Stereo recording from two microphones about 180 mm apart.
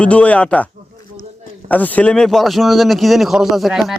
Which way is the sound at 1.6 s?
10° left (ahead or behind).